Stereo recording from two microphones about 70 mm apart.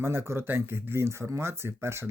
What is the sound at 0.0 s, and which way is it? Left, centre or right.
Speech, right.